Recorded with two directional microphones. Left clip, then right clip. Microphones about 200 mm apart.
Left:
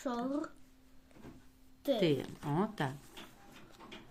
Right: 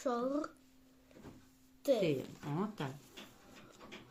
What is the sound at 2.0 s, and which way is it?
Speech, 40° left (ahead or behind).